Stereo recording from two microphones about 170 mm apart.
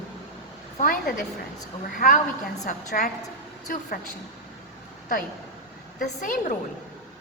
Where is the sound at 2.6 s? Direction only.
45° left (ahead or behind).